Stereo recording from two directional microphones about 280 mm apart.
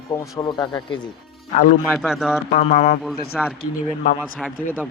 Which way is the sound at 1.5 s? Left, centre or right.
Left.